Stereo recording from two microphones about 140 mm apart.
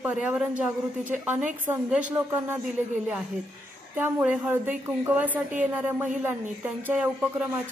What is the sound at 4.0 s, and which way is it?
Speech, 15° right (ahead or behind).